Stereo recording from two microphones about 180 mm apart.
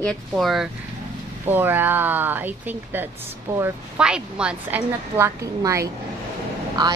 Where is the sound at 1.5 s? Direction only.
10° right (ahead or behind).